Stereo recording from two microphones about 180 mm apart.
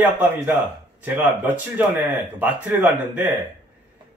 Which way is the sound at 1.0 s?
10° right (ahead or behind).